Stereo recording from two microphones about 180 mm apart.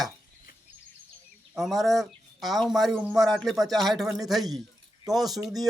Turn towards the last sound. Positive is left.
turn(degrees=0)  # may be behind; listen again after turning